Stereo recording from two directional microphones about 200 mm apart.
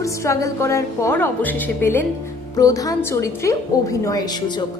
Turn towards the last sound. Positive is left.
turn(degrees=15)  # may be behind; listen again after turning